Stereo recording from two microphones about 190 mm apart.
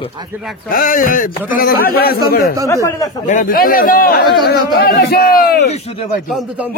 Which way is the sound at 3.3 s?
45° left (ahead or behind).